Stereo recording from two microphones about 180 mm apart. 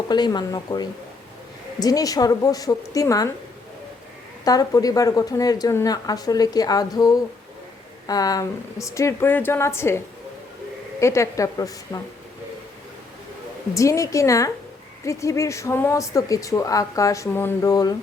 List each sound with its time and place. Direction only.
0.1 s a woman's voice: 25° left (ahead or behind)
4.4 s a woman's voice: 20° left (ahead or behind)
11.0 s speech: 15° left (ahead or behind)
13.7 s speech: 15° left (ahead or behind)